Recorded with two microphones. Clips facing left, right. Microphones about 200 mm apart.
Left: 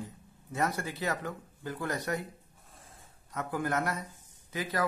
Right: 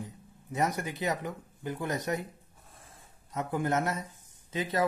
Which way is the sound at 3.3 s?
25° right (ahead or behind).